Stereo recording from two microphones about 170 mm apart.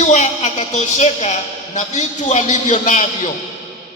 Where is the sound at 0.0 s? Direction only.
45° left (ahead or behind).